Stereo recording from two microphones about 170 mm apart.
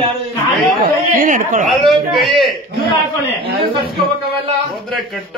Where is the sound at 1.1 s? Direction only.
50° right (ahead or behind).